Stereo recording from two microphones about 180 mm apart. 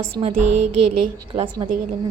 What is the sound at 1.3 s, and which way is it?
Speech, 30° right (ahead or behind).